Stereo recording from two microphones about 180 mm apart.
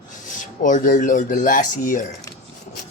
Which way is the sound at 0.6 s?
45° left (ahead or behind).